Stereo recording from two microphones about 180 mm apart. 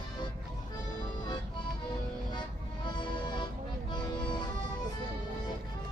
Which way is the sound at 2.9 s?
25° left (ahead or behind).